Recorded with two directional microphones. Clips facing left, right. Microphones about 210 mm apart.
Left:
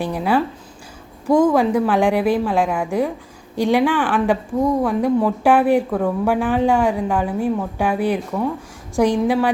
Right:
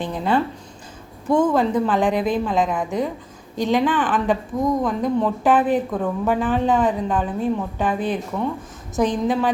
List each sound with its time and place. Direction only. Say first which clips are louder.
0.0 s speech: left 2 dB; 10° left (ahead or behind)